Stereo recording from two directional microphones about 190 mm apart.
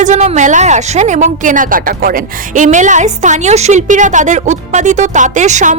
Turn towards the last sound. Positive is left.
turn(degrees=-40)  # may be behind; listen again after turning